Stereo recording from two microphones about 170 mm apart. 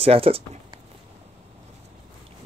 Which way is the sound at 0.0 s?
35° right (ahead or behind).